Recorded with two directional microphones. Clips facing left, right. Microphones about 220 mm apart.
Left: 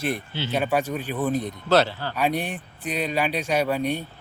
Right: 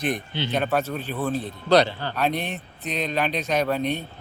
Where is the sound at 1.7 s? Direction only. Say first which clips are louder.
Right 2 dB; 5° left (ahead or behind).